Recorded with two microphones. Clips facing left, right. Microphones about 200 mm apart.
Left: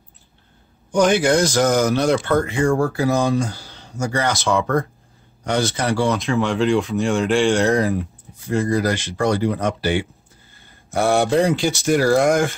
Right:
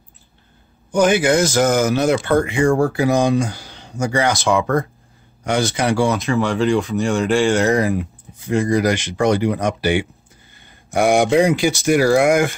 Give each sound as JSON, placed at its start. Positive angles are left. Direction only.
{"t": 0.9, "sound": "speech", "side_deg": -5}